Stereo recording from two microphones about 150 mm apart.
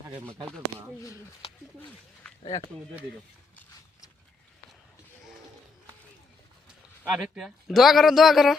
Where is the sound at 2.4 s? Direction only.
50° left (ahead or behind).